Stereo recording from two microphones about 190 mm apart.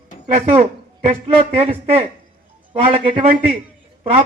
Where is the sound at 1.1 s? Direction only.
30° right (ahead or behind).